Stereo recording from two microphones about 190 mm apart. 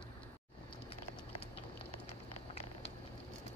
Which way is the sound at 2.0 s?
30° left (ahead or behind).